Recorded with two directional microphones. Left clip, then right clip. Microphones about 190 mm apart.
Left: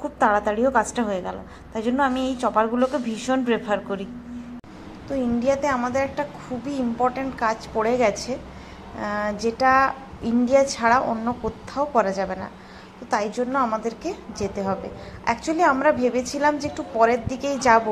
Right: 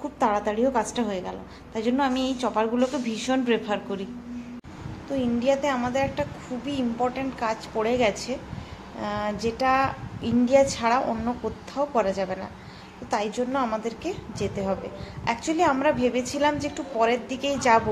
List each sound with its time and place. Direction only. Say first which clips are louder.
0.0 s a woman's voice: left 4 dB; 10° left (ahead or behind)
5.4 s a woman's voice: left 2 dB; 15° left (ahead or behind)